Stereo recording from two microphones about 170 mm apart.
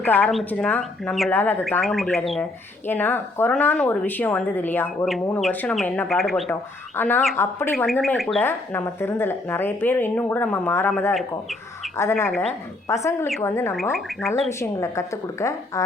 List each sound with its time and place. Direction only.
0.0 s speech: 10° left (ahead or behind)
2.8 s speech: 10° left (ahead or behind)
6.5 s speech: 10° left (ahead or behind)
11.1 s speech: centre (ahead or behind)
11.9 s speech: 15° left (ahead or behind)